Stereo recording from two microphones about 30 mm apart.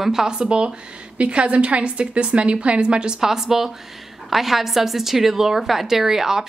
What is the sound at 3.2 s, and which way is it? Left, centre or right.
A woman's voice, centre.